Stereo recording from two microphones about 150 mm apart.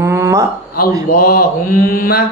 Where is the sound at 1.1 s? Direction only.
75° left (ahead or behind).